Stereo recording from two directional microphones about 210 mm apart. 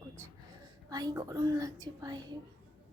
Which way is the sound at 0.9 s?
20° right (ahead or behind).